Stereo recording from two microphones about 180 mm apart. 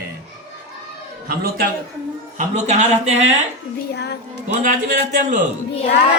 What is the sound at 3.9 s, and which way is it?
Speech, 70° left (ahead or behind).